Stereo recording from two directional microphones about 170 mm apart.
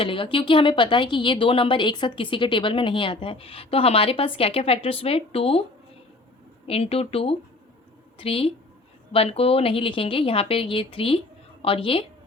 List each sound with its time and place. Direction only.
0.0 s a woman's voice: 30° left (ahead or behind)
6.7 s a woman's voice: 35° left (ahead or behind)